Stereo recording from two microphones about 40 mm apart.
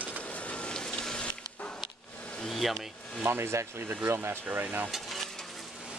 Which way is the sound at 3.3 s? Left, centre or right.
Right.